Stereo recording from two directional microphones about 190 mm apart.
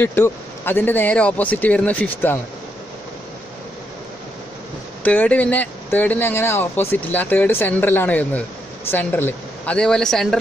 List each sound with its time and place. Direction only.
0.0 s speech: 10° left (ahead or behind)
5.0 s a woman's voice: 10° left (ahead or behind)